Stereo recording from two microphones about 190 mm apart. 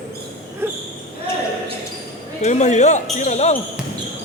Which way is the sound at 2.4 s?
40° left (ahead or behind).